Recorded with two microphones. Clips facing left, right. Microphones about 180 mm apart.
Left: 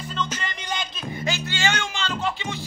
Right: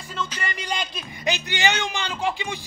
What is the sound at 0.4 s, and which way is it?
Speech, 10° right (ahead or behind).